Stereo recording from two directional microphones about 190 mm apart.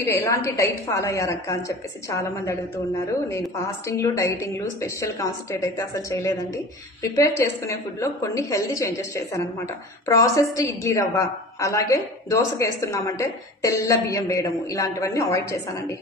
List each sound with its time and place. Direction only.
0.0 s a woman's voice: 15° left (ahead or behind)
3.9 s a woman's voice: 15° left (ahead or behind)